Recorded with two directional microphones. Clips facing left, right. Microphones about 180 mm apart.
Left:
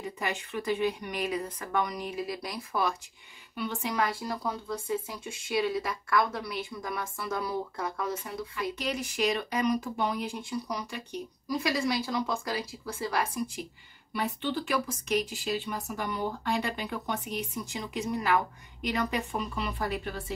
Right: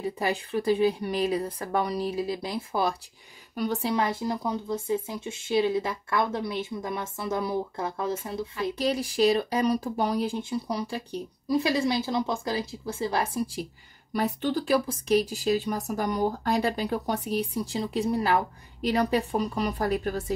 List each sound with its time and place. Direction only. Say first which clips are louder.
0.0 s speech: right 6 dB; 35° right (ahead or behind)
3.5 s speech: right 5 dB; 40° right (ahead or behind)
3.9 s speech: right 4 dB; 20° right (ahead or behind); by 20.3 s 45° right (ahead or behind)